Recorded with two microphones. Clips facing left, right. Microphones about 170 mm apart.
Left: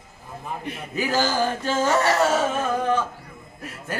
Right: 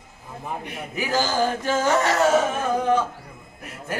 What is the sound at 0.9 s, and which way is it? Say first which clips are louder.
Speech: even; 15° right (ahead or behind).